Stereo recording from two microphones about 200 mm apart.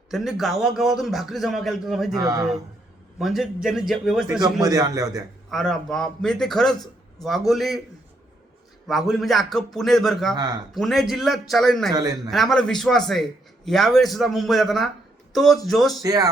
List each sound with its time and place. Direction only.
0.1 s a man's voice: centre (ahead or behind)
2.1 s a man's voice: 20° right (ahead or behind)
3.2 s a man's voice: centre (ahead or behind)
4.6 s a man's voice: 20° right (ahead or behind)
5.5 s a man's voice: centre (ahead or behind)
8.9 s a man's voice: centre (ahead or behind)
10.3 s a man's voice: 20° right (ahead or behind)
10.8 s a man's voice: centre (ahead or behind)
11.9 s a man's voice: 20° right (ahead or behind)
12.3 s a man's voice: centre (ahead or behind)
16.0 s a man's voice: 20° right (ahead or behind)